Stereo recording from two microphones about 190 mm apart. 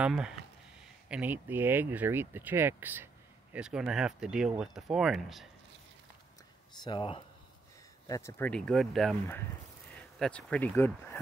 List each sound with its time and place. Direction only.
0.0 s speech: 5° right (ahead or behind)
6.8 s speech: 25° left (ahead or behind)
8.1 s speech: 15° left (ahead or behind)